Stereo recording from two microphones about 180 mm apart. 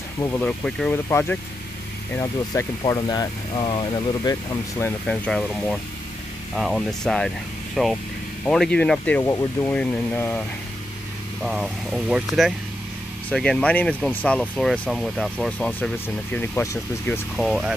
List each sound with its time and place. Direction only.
0.2 s speech: 10° left (ahead or behind)
4.3 s speech: 15° left (ahead or behind)
9.2 s speech: 15° left (ahead or behind)
11.4 s speech: 5° right (ahead or behind)
17.4 s speech: centre (ahead or behind)